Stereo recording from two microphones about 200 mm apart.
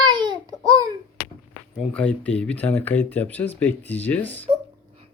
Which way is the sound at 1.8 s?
5° left (ahead or behind).